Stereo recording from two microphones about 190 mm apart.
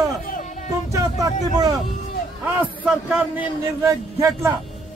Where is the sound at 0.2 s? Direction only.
45° left (ahead or behind).